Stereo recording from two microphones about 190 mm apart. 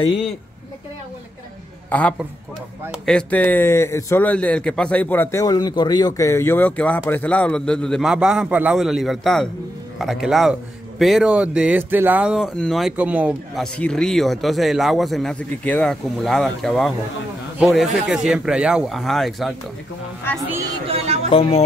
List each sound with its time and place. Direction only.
1.9 s a man's voice: 5° left (ahead or behind)
13.7 s a man's voice: 5° left (ahead or behind)
20.4 s speech: 15° right (ahead or behind)
20.8 s a sound: 30° right (ahead or behind)
21.3 s speech: 30° left (ahead or behind)